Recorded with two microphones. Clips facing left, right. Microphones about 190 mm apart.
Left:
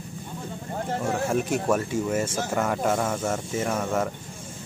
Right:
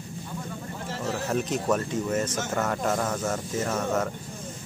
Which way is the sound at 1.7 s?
10° left (ahead or behind).